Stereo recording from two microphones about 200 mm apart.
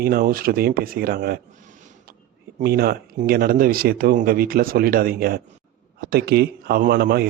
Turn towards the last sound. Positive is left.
turn(degrees=-50)  # may be behind; listen again after turning